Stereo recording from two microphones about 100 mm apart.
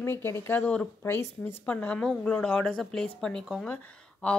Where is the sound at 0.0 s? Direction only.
25° left (ahead or behind).